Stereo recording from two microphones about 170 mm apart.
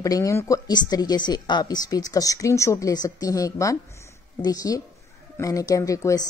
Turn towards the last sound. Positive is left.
turn(degrees=20)  # may be behind; listen again after turning